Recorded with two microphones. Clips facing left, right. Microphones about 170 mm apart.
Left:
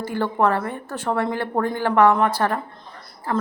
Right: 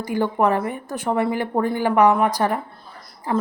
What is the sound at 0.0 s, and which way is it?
A woman's voice, 15° right (ahead or behind).